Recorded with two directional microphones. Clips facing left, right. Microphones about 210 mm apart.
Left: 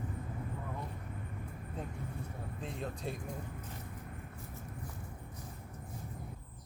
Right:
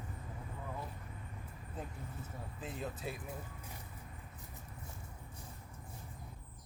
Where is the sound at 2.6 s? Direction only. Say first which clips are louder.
Left 1 dB; 5° right (ahead or behind).